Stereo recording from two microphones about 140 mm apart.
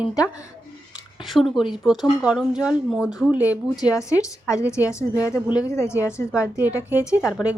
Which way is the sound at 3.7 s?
25° left (ahead or behind).